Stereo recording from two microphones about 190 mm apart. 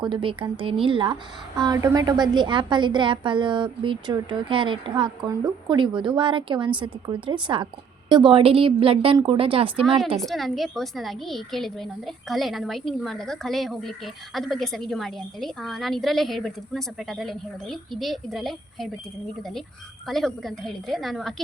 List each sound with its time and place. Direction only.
0.0 s a woman's voice: 25° right (ahead or behind)
10.2 s a woman's voice: centre (ahead or behind)